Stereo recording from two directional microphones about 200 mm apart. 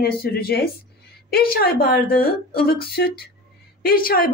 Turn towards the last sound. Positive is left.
turn(degrees=45)  # may be behind; listen again after turning